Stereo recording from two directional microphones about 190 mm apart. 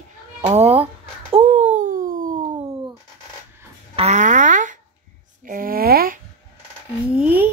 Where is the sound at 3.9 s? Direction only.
35° right (ahead or behind).